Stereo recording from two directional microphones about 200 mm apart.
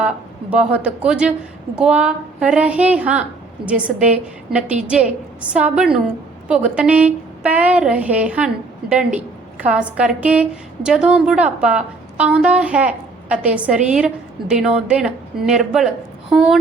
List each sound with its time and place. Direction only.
0.5 s a woman's voice: 5° right (ahead or behind)